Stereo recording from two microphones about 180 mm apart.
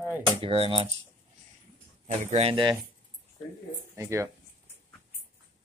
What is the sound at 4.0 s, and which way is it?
Speech, 15° right (ahead or behind).